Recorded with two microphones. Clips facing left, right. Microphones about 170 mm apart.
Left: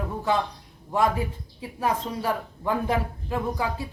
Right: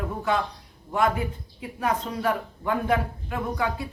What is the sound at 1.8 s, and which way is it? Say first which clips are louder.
Speech: right 1 dB; 30° left (ahead or behind).